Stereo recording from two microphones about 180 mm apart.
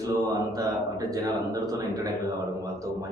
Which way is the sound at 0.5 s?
20° right (ahead or behind).